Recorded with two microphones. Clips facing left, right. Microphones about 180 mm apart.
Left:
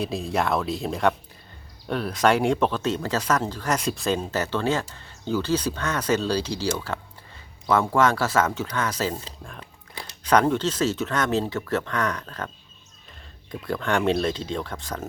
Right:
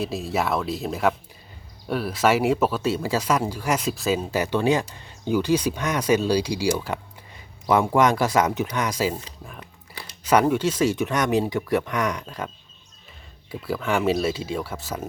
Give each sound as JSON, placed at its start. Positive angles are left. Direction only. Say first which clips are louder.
{"t": 0.0, "sound": "speech", "louder": "even", "side_deg": 0}
{"t": 13.5, "sound": "speech", "louder": "even", "side_deg": -5}